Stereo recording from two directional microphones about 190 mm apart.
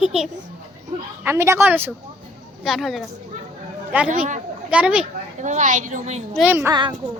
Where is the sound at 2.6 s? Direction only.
Centre (ahead or behind).